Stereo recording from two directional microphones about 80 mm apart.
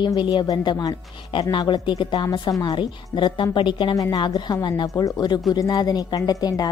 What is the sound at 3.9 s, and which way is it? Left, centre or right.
Speech, left.